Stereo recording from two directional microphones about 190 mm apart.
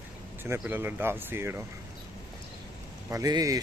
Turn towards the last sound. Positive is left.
turn(degrees=-20)  # may be behind; listen again after turning